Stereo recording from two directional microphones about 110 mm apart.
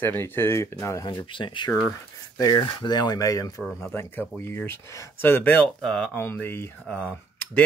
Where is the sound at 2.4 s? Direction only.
35° left (ahead or behind).